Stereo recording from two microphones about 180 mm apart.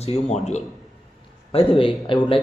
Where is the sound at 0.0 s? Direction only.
35° left (ahead or behind).